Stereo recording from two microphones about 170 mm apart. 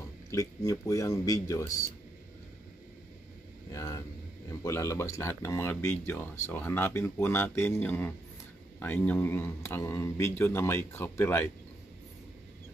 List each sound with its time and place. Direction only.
0.7 s speech: 20° left (ahead or behind)
3.7 s speech: 20° left (ahead or behind)